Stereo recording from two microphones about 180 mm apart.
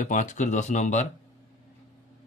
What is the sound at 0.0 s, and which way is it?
Speech, 45° left (ahead or behind).